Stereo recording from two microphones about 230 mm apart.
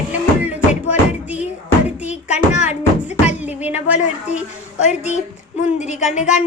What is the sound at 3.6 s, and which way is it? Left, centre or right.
Music, centre.